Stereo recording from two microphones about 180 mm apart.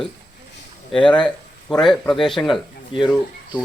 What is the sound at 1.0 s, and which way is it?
Speech, 5° left (ahead or behind).